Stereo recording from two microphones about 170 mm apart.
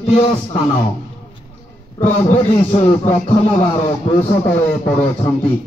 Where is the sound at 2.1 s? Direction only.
35° left (ahead or behind).